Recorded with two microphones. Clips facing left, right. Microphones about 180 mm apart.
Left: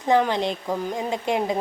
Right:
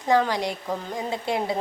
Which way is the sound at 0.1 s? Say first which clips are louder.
Left 2 dB; 20° left (ahead or behind).